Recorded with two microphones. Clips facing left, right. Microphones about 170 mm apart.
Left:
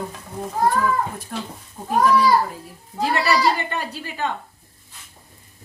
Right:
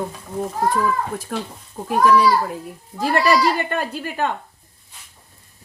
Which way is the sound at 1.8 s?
90° right.